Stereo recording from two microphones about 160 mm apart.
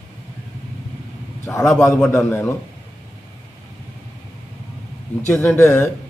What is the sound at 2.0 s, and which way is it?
Speech, 15° left (ahead or behind).